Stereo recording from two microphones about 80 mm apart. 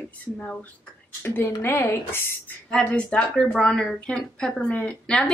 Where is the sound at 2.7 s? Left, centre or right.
Centre.